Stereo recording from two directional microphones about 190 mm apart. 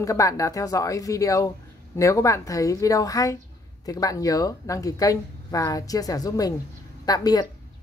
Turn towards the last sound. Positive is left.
turn(degrees=20)  # may be behind; listen again after turning